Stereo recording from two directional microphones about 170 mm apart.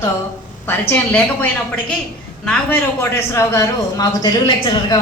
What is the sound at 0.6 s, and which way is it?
A woman's voice, 10° left (ahead or behind).